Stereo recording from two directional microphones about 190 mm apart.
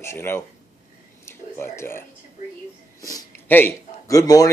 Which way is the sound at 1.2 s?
15° left (ahead or behind).